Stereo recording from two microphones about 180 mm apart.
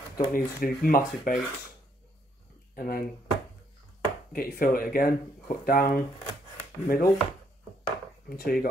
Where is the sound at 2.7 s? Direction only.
55° left (ahead or behind).